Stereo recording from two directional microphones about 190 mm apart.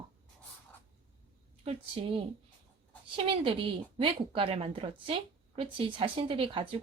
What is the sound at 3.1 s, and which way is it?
Speech, 30° right (ahead or behind).